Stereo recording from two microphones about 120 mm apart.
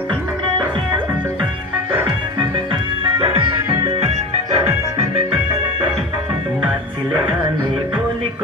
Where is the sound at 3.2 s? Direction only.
45° right (ahead or behind).